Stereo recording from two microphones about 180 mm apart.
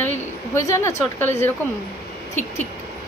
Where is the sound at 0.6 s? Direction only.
15° left (ahead or behind).